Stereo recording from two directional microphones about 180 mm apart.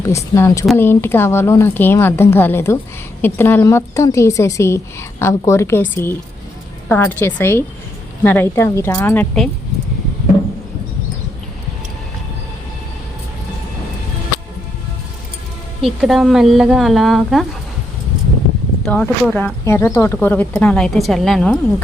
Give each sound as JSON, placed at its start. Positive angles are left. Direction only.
{"t": 0.0, "sound": "a woman's voice", "side_deg": 15}
{"t": 15.8, "sound": "speech", "side_deg": 0}
{"t": 18.9, "sound": "a woman's voice", "side_deg": 10}